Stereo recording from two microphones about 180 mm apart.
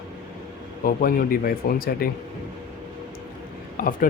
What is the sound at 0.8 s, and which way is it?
Speech, 55° left (ahead or behind).